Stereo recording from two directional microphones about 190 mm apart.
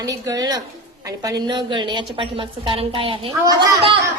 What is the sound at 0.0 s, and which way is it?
A woman's voice, 20° right (ahead or behind).